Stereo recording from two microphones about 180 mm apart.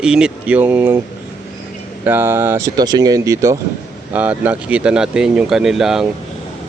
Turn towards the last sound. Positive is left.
turn(degrees=0)  # may be behind; listen again after turning